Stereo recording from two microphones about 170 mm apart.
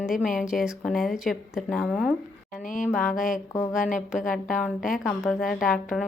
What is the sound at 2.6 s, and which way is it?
Speech, 50° left (ahead or behind).